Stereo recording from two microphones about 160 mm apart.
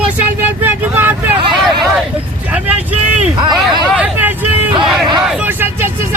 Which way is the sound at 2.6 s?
10° right (ahead or behind).